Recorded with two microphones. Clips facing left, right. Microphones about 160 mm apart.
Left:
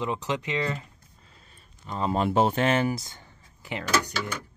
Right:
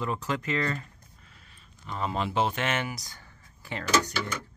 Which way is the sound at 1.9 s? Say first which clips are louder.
Left 5 dB; 35° left (ahead or behind).